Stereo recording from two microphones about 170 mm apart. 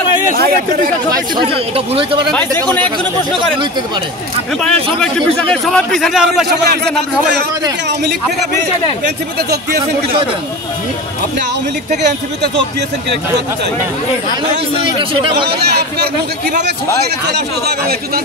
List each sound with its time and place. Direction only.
1.1 s speech: 25° right (ahead or behind)
2.3 s speech: 10° left (ahead or behind)
4.6 s a man's voice: 5° left (ahead or behind)
6.5 s speech: 75° right (ahead or behind)
15.4 s speech: 75° right (ahead or behind)
17.3 s speech: 65° right (ahead or behind)